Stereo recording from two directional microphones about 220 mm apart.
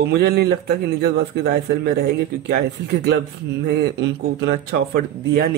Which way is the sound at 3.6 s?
50° right (ahead or behind).